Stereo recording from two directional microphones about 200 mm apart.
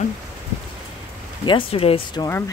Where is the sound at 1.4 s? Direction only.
25° left (ahead or behind).